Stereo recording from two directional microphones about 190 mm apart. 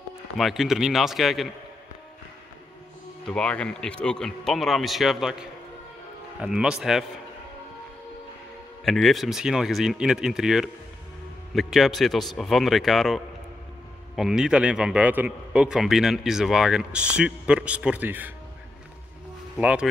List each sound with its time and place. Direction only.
0.4 s a man's voice: centre (ahead or behind)
3.3 s a man's voice: 5° left (ahead or behind)
8.8 s a man's voice: centre (ahead or behind)
19.5 s speech: 5° right (ahead or behind)